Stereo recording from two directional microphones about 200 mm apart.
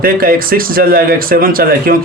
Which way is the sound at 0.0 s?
45° right (ahead or behind).